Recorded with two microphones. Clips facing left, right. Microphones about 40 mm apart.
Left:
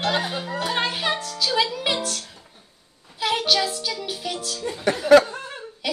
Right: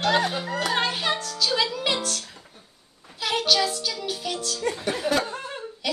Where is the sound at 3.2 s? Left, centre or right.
Centre.